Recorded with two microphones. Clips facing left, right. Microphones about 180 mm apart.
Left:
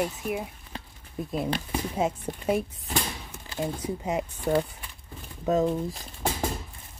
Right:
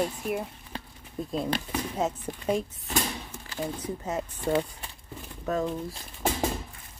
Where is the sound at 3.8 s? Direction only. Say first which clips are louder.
Left 3 dB; 10° left (ahead or behind).